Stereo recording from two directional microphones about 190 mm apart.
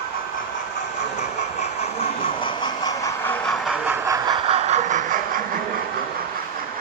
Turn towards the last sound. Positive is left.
turn(degrees=-45)  # may be behind; listen again after turning